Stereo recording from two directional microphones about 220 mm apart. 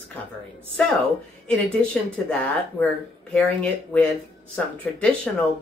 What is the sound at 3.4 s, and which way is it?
Speech, 5° left (ahead or behind).